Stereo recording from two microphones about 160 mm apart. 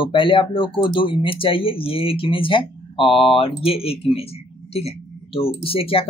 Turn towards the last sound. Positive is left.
turn(degrees=35)  # may be behind; listen again after turning